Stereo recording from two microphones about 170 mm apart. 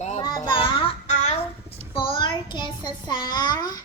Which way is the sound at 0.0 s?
40° left (ahead or behind).